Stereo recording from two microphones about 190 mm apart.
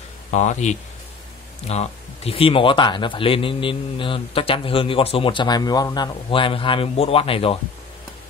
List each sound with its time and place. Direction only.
0.3 s speech: 40° left (ahead or behind)